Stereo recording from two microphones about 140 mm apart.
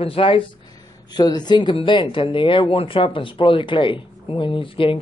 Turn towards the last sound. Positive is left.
turn(degrees=40)  # may be behind; listen again after turning